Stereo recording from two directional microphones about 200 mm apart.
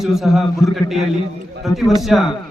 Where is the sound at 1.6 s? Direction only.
Centre (ahead or behind).